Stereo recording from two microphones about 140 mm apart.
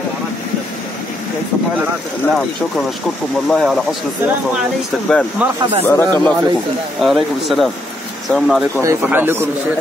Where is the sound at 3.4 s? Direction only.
Centre (ahead or behind).